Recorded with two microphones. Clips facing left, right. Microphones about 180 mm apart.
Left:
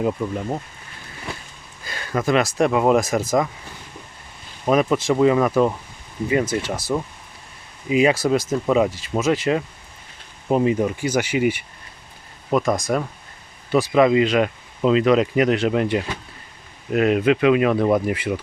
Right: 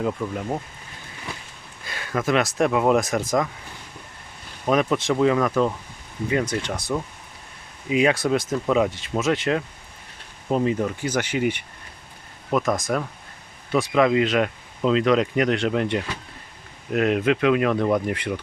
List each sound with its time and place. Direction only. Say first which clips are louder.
1.8 s speech: left 2 dB; centre (ahead or behind)
4.7 s speech: left 3 dB; centre (ahead or behind)
10.5 s speech: left 3 dB; 15° left (ahead or behind)